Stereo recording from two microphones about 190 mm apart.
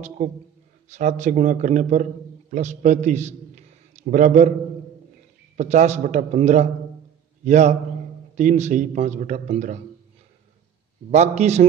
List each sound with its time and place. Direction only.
0.8 s a man's voice: 40° right (ahead or behind)
5.6 s a man's voice: 40° right (ahead or behind)
11.1 s a man's voice: 35° right (ahead or behind)